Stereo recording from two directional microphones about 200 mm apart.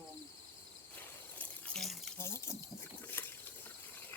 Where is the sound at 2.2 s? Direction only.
15° left (ahead or behind).